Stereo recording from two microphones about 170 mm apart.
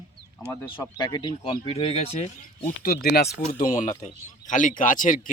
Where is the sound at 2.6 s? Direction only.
55° left (ahead or behind).